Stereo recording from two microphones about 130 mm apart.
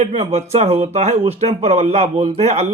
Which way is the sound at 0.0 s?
55° right (ahead or behind).